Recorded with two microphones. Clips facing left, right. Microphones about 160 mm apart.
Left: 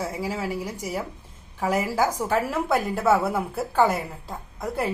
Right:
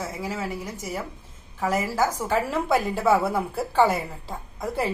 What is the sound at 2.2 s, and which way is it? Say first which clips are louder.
A woman's voice: even; centre (ahead or behind).